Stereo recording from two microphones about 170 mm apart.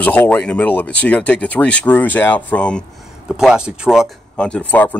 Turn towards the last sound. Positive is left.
turn(degrees=10)  # may be behind; listen again after turning